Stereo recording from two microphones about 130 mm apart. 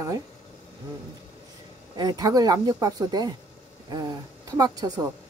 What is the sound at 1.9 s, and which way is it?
A woman's voice, 30° right (ahead or behind).